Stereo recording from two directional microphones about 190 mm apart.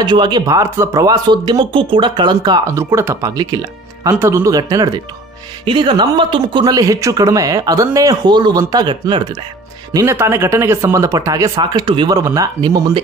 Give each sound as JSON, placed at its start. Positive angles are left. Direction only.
{"t": 0.0, "sound": "speech", "side_deg": -25}